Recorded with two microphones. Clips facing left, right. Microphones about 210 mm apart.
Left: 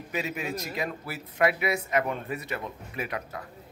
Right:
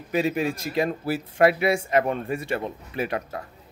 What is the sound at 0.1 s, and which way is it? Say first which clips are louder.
Speech: right 8 dB; 30° right (ahead or behind).